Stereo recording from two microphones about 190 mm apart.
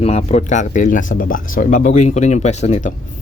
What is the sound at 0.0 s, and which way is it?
Speech, 35° left (ahead or behind).